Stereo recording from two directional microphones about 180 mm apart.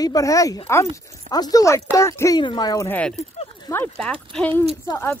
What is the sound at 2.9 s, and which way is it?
Speech, 5° left (ahead or behind).